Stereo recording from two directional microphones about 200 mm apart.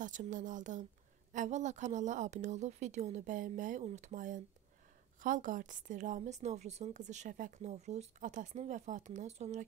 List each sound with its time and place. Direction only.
0.0 s a woman's voice: 40° right (ahead or behind)